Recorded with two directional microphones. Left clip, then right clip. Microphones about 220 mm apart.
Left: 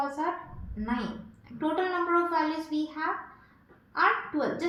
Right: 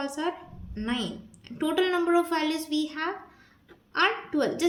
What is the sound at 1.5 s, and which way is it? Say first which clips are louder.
A child's voice: right 3 dB; 40° right (ahead or behind).